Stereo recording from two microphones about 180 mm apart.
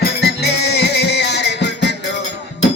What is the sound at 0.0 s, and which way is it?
Music, 65° left (ahead or behind).